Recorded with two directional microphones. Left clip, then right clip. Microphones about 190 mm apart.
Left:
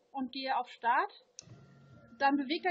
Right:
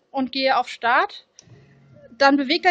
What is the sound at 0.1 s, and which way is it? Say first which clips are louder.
A woman's voice: right 14 dB; 50° right (ahead or behind).